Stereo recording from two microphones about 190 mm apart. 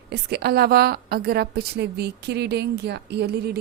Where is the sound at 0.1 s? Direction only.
60° right (ahead or behind).